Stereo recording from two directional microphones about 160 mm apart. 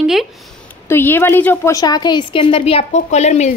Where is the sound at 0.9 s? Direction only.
15° left (ahead or behind).